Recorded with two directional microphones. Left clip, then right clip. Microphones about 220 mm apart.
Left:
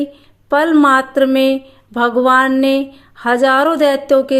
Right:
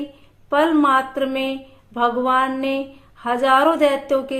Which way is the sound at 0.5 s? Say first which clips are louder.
Left 5 dB; 40° left (ahead or behind).